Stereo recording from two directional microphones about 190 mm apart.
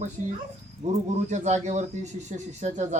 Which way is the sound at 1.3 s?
40° right (ahead or behind).